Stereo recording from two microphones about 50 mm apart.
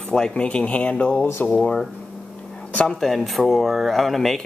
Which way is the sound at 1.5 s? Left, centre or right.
Centre.